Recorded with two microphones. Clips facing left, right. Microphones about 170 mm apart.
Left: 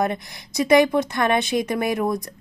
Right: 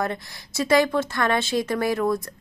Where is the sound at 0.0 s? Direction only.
15° left (ahead or behind).